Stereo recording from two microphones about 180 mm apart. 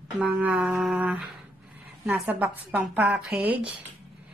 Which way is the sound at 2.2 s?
5° right (ahead or behind).